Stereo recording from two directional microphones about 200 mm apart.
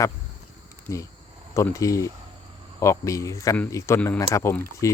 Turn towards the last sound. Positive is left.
turn(degrees=15)  # may be behind; listen again after turning